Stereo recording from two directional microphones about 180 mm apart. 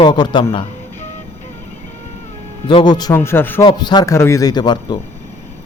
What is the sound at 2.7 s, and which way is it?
Speech, 25° left (ahead or behind).